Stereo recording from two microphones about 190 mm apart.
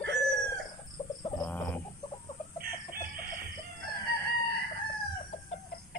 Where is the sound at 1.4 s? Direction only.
10° left (ahead or behind).